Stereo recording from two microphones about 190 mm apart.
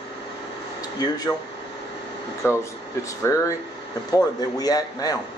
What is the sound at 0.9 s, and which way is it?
Speech, 20° left (ahead or behind).